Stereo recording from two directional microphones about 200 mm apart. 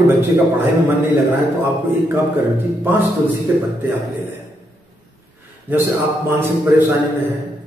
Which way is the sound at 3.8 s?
10° right (ahead or behind).